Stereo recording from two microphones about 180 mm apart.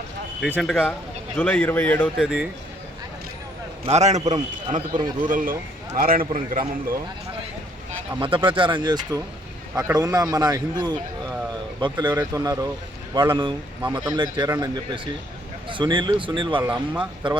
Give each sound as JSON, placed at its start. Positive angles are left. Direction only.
{"t": 0.4, "sound": "a man's voice", "side_deg": 5}
{"t": 2.1, "sound": "a man's voice", "side_deg": -5}
{"t": 3.8, "sound": "a man's voice", "side_deg": -40}
{"t": 4.9, "sound": "speech", "side_deg": -25}
{"t": 5.3, "sound": "speech", "side_deg": -50}
{"t": 8.2, "sound": "speech", "side_deg": -25}